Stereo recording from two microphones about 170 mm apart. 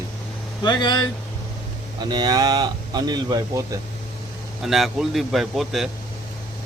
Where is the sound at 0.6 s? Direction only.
25° left (ahead or behind).